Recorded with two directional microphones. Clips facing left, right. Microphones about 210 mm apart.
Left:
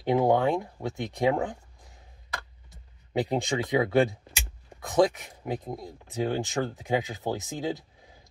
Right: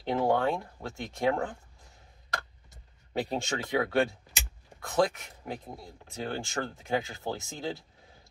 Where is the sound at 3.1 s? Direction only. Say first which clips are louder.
Left 5 dB; 15° left (ahead or behind).